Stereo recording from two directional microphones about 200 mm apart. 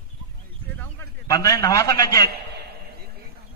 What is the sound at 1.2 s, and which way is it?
A man's voice, 15° left (ahead or behind).